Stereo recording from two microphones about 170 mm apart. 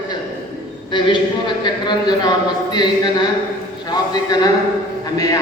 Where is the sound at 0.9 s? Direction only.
30° left (ahead or behind).